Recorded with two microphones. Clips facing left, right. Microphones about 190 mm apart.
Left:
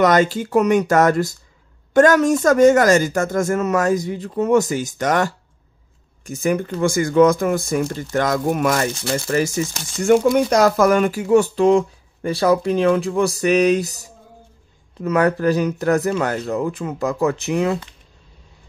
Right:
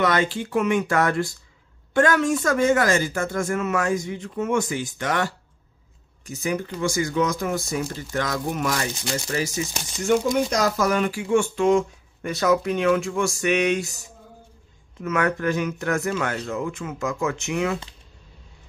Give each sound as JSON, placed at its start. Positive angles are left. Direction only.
{"t": 0.0, "sound": "speech", "side_deg": 40}